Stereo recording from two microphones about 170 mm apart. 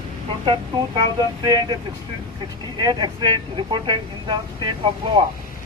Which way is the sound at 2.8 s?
25° right (ahead or behind).